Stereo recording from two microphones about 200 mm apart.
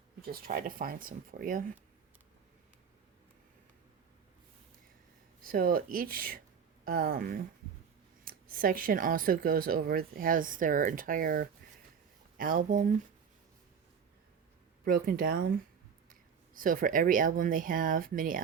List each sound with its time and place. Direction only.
0.3 s speech: 45° right (ahead or behind)
5.4 s speech: 45° right (ahead or behind)
14.8 s speech: 45° right (ahead or behind)
16.6 s speech: 45° right (ahead or behind)